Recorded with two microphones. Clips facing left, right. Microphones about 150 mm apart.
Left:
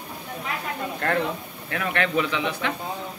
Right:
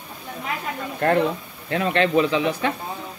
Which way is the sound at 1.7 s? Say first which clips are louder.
Right 5 dB; 25° right (ahead or behind).